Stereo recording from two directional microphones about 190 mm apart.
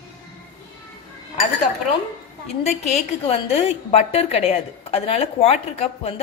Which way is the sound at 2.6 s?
35° left (ahead or behind).